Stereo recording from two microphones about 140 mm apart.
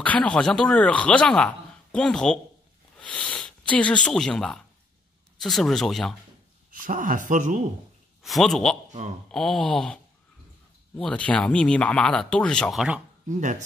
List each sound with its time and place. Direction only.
0.0 s speech: 10° left (ahead or behind)
6.7 s speech: 75° right (ahead or behind)
8.2 s speech: centre (ahead or behind)
11.0 s speech: 10° left (ahead or behind)
13.3 s speech: 60° right (ahead or behind)